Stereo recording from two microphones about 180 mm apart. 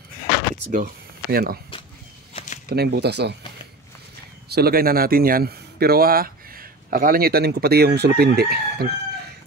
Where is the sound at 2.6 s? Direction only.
65° right (ahead or behind).